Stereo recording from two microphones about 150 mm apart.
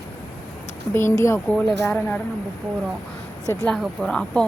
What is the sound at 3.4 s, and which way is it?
Speech, 20° left (ahead or behind).